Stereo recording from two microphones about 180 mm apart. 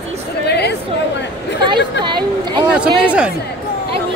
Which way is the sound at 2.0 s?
25° right (ahead or behind).